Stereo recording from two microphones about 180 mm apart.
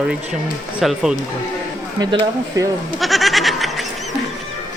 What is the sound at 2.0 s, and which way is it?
Speech, 25° right (ahead or behind).